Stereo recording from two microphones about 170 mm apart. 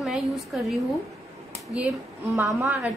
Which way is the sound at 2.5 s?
10° right (ahead or behind).